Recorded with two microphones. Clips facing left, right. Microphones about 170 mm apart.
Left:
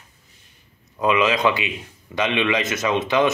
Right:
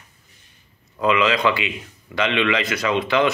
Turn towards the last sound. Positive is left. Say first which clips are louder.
# even
turn(degrees=20)  # may be behind; listen again after turning